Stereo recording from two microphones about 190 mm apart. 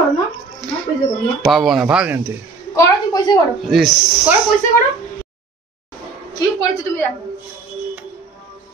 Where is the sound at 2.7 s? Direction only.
20° left (ahead or behind).